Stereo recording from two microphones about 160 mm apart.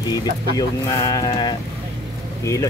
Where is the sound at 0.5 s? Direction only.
20° left (ahead or behind).